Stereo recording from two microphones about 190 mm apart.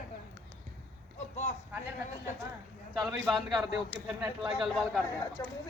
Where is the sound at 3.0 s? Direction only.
Centre (ahead or behind).